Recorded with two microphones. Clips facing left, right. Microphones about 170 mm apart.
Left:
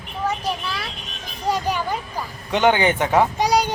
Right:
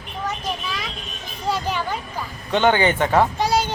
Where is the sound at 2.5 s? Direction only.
15° left (ahead or behind).